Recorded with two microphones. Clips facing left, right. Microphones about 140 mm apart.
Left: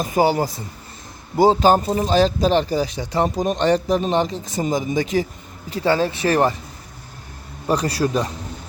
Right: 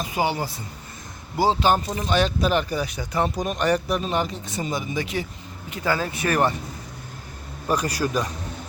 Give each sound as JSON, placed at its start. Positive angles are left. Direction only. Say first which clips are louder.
{"t": 0.0, "sound": "speech", "louder": "left 7 dB", "side_deg": 40}
{"t": 7.7, "sound": "speech", "louder": "left 4 dB", "side_deg": 35}